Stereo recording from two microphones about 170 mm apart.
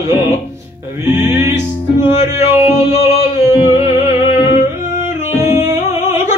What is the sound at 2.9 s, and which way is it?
Music, 40° left (ahead or behind).